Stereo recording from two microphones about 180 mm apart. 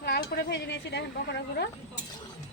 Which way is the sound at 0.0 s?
65° left (ahead or behind).